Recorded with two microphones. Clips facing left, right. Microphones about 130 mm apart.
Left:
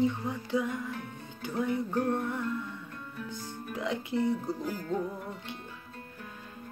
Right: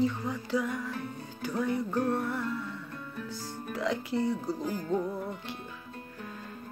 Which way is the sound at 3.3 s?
35° right (ahead or behind).